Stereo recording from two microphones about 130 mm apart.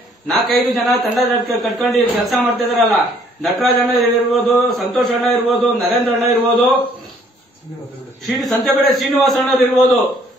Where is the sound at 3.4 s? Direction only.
Centre (ahead or behind).